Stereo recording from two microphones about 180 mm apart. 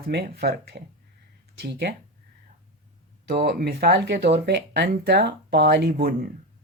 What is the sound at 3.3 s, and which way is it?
Speech, 60° right (ahead or behind).